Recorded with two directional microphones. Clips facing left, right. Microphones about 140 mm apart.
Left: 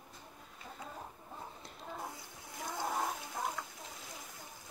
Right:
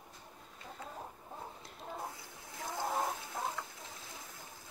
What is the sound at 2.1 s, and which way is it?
Splash, 20° left (ahead or behind).